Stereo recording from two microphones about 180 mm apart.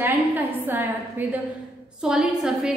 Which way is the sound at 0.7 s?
10° right (ahead or behind).